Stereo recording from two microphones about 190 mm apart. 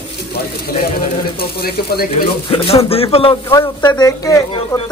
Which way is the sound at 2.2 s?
30° left (ahead or behind).